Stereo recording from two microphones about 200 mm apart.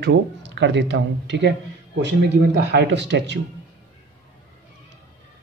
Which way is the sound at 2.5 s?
60° right (ahead or behind).